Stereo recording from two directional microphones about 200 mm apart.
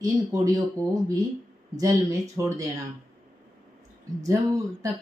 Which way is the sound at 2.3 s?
15° right (ahead or behind).